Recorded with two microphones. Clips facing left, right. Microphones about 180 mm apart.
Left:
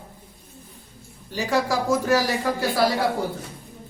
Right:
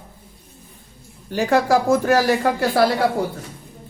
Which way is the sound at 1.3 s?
55° right (ahead or behind).